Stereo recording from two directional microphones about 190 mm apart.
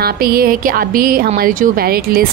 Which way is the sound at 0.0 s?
50° right (ahead or behind).